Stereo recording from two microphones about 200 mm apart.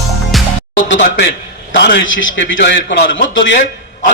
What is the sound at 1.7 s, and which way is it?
A man's voice, 60° left (ahead or behind).